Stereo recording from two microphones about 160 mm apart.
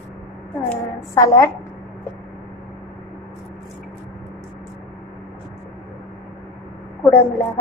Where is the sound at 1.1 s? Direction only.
20° left (ahead or behind).